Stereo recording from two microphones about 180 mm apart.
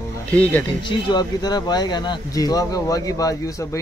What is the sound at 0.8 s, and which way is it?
Speech, 25° left (ahead or behind).